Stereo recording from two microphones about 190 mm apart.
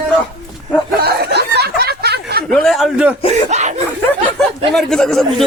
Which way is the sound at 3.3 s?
35° right (ahead or behind).